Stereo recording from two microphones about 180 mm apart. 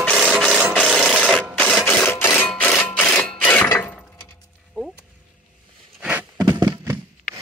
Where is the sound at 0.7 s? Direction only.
5° left (ahead or behind).